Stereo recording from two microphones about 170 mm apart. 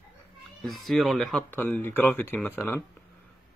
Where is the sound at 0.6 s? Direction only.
Centre (ahead or behind).